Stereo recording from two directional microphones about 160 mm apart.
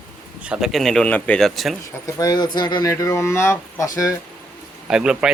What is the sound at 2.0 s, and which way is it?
Speech, 20° left (ahead or behind).